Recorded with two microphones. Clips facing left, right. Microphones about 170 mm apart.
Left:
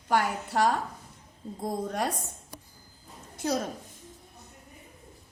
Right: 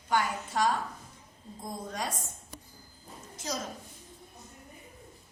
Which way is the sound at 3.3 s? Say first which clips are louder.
Left 8 dB; 60° left (ahead or behind).